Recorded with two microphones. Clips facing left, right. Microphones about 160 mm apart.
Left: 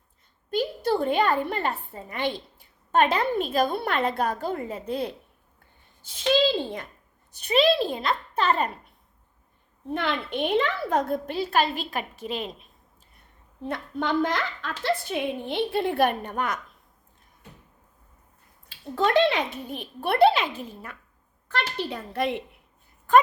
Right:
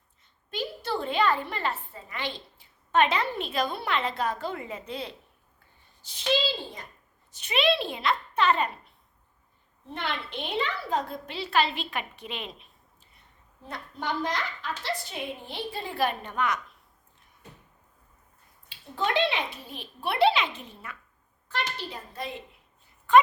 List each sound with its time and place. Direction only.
0.5 s a woman's voice: 45° left (ahead or behind)
7.4 s a child's voice: 40° left (ahead or behind)
9.9 s a woman's voice: 50° left (ahead or behind)
13.1 s a woman's voice: 55° left (ahead or behind)
18.9 s a woman's voice: 45° left (ahead or behind)
21.5 s a woman's voice: 65° left (ahead or behind)